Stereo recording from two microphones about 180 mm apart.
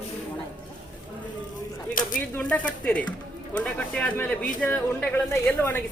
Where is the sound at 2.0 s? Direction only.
50° left (ahead or behind).